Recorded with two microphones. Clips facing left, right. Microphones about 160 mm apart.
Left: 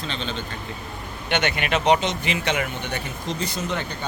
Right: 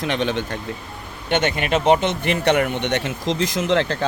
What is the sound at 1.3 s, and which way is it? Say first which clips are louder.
Speech: right 4 dB; 40° right (ahead or behind).